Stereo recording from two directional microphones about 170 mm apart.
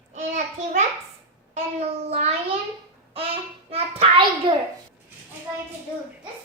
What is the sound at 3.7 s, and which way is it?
Hands, 35° right (ahead or behind).